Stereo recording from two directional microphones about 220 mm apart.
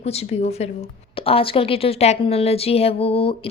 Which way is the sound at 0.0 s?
25° left (ahead or behind).